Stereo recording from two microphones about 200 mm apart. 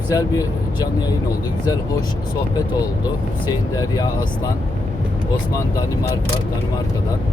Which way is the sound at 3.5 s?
20° left (ahead or behind).